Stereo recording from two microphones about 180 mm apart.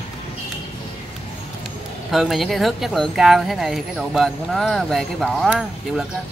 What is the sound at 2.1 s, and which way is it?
Speech, centre (ahead or behind).